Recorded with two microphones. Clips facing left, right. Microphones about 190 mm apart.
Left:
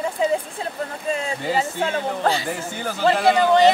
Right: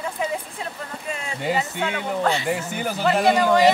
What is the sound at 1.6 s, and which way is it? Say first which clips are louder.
Speech: left 3 dB; 35° left (ahead or behind).